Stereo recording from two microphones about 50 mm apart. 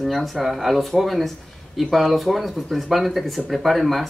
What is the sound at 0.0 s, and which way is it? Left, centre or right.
Speech, centre.